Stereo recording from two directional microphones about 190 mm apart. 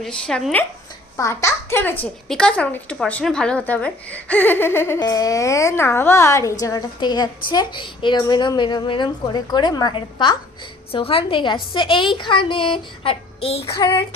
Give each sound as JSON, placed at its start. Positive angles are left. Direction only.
{"t": 0.0, "sound": "speech", "side_deg": 5}
{"t": 1.1, "sound": "a child's voice", "side_deg": 15}